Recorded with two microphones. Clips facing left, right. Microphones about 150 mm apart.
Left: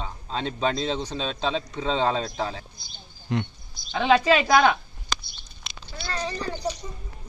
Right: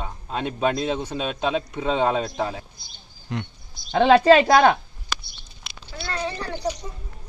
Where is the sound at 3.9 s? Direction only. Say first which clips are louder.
Right 6 dB; 40° right (ahead or behind).